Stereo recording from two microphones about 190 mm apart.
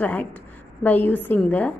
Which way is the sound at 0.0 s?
10° left (ahead or behind).